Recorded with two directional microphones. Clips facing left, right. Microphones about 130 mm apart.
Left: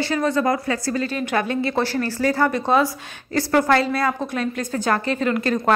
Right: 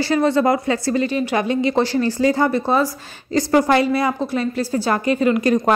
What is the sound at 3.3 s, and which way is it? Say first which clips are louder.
A woman's voice: right 2 dB; 15° right (ahead or behind).